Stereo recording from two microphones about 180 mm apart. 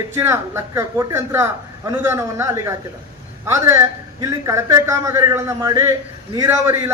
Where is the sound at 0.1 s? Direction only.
15° right (ahead or behind).